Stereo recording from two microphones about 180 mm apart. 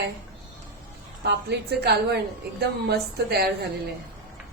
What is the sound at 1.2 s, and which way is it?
A woman's voice, 65° right (ahead or behind).